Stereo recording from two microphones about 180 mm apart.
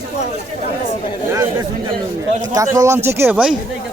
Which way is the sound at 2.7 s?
15° right (ahead or behind).